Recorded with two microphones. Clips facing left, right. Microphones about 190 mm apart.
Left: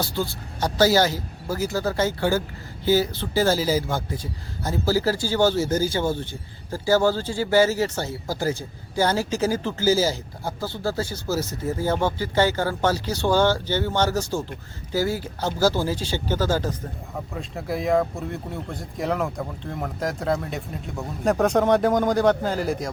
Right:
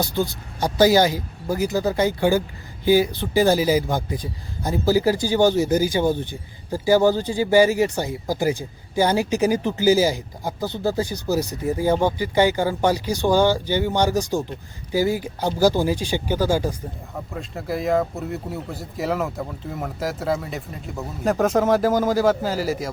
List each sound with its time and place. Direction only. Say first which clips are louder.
0.0 s speech: right 3 dB; 15° right (ahead or behind)
17.3 s speech: right 2 dB; centre (ahead or behind)